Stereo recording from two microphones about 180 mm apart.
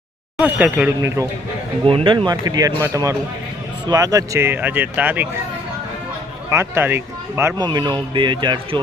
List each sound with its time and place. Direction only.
0.3 s speech: 5° right (ahead or behind)
1.8 s speech: 30° right (ahead or behind); by 5.3 s 10° right (ahead or behind)
6.5 s speech: 15° right (ahead or behind)